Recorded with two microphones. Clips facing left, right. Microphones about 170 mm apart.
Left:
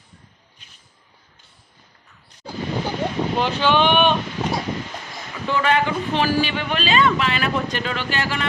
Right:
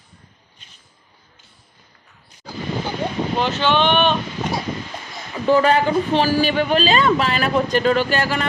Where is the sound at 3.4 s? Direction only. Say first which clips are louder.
Even; 10° left (ahead or behind).